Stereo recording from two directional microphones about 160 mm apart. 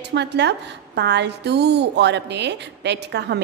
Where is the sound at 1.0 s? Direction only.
90° right.